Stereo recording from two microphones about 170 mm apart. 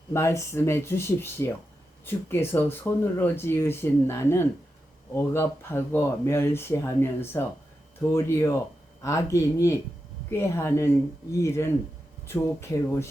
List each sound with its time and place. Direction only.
0.1 s speech: 15° left (ahead or behind)